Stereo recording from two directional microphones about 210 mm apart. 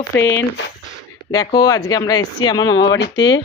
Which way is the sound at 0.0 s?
15° left (ahead or behind).